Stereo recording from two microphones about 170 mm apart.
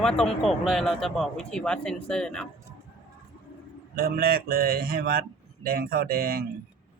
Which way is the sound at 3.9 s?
65° right (ahead or behind).